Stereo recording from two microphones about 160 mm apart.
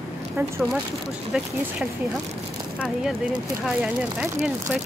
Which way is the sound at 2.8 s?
5° right (ahead or behind).